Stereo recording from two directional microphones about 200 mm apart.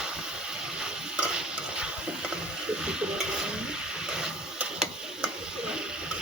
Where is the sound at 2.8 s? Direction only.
5° right (ahead or behind).